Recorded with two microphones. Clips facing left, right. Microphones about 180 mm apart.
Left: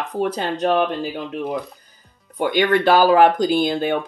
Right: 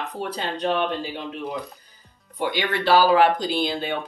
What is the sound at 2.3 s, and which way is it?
Speech, 50° left (ahead or behind).